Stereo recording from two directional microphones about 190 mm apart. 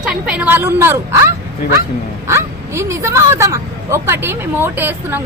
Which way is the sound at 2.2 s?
15° right (ahead or behind).